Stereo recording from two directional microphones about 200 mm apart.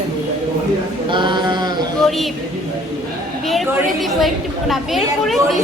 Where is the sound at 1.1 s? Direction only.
20° right (ahead or behind).